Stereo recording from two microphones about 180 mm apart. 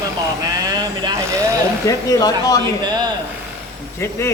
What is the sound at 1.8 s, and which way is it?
Speech, 20° left (ahead or behind).